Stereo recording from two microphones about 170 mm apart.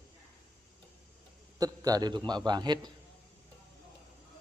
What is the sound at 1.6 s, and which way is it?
A man's voice, 20° right (ahead or behind).